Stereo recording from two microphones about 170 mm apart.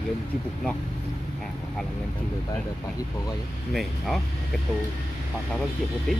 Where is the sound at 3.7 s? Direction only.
Centre (ahead or behind).